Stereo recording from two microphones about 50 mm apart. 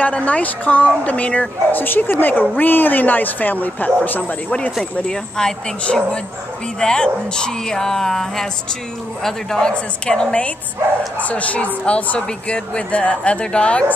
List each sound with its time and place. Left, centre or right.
0.0 s a woman's voice: left
5.0 s speech: centre
11.1 s speech: left